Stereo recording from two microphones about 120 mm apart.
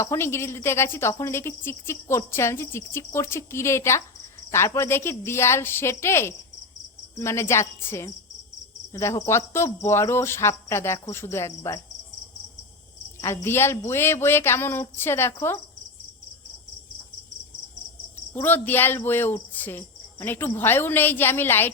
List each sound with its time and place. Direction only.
0.0 s a woman's voice: 25° left (ahead or behind)
13.2 s a woman's voice: 20° left (ahead or behind)
18.4 s speech: 15° left (ahead or behind)